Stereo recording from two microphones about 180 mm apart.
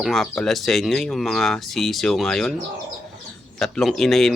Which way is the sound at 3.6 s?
Centre (ahead or behind).